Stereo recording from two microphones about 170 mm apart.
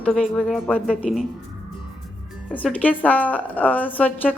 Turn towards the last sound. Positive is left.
turn(degrees=10)  # may be behind; listen again after turning